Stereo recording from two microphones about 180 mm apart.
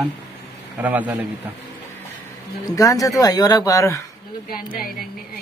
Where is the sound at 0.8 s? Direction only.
10° right (ahead or behind).